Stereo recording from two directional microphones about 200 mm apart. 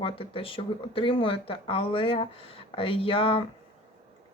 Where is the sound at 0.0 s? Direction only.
25° left (ahead or behind).